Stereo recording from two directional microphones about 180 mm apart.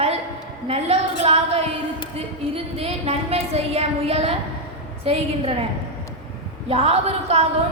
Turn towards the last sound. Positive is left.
turn(degrees=-35)  # may be behind; listen again after turning